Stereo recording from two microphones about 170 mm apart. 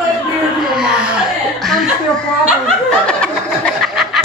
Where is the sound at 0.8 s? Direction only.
5° right (ahead or behind).